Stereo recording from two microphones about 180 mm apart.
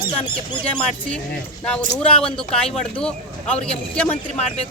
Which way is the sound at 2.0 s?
5° left (ahead or behind).